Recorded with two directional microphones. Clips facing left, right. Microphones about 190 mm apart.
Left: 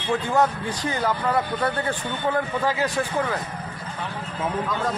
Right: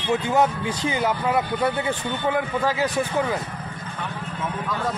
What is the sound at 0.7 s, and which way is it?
Speech, 20° right (ahead or behind).